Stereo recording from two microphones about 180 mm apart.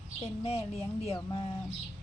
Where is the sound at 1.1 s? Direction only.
30° left (ahead or behind).